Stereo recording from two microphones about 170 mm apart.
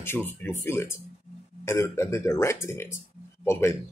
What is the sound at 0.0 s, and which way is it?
Speech, 10° left (ahead or behind).